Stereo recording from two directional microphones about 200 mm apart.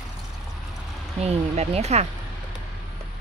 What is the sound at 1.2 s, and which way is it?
Speech, 30° right (ahead or behind).